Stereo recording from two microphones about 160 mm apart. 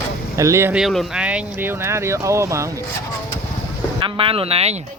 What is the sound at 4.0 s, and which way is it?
Speech, 35° right (ahead or behind).